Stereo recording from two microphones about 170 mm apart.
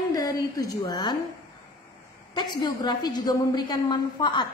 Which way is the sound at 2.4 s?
25° left (ahead or behind).